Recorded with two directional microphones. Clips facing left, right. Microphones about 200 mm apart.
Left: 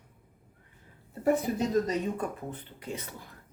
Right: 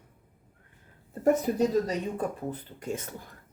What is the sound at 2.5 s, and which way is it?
Speech, 45° right (ahead or behind).